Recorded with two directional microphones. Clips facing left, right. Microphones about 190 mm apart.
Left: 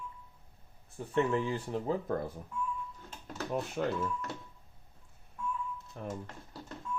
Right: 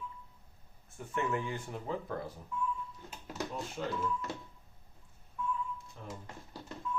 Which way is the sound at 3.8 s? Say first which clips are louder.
Left 5 dB; 55° left (ahead or behind).